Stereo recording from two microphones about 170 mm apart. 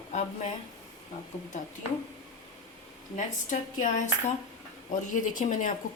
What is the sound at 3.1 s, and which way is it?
Speech, 50° left (ahead or behind).